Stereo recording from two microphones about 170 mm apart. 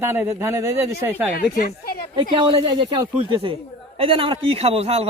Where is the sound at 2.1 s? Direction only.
30° right (ahead or behind).